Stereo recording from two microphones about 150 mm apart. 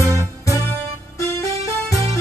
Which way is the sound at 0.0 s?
20° right (ahead or behind).